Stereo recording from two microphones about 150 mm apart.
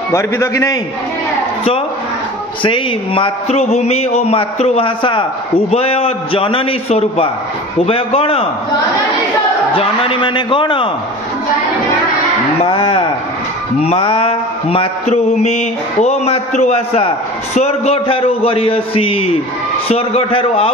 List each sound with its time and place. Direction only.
0.1 s a man's voice: 20° left (ahead or behind)
2.6 s a man's voice: 35° left (ahead or behind)
5.7 s mantra: 40° left (ahead or behind)
9.8 s mantra: 40° left (ahead or behind)
12.6 s mantra: 35° left (ahead or behind)